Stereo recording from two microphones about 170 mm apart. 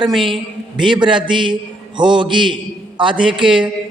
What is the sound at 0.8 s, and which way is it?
A woman's voice, 30° right (ahead or behind).